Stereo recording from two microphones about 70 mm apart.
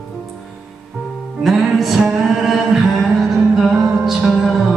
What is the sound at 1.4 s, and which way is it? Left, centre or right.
Music, centre.